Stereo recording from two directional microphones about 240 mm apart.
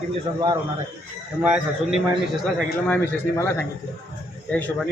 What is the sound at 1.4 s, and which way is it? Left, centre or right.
Speech, centre.